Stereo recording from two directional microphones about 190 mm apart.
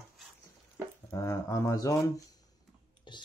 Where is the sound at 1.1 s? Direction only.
15° left (ahead or behind).